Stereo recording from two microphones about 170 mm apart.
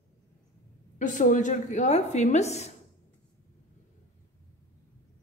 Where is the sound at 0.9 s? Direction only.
50° left (ahead or behind).